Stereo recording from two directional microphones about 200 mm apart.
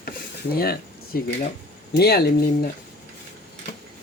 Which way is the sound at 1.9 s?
50° left (ahead or behind).